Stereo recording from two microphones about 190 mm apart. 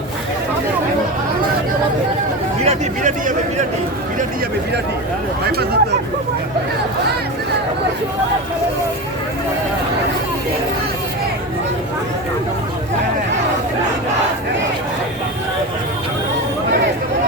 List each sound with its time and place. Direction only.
2.6 s speech: 40° right (ahead or behind)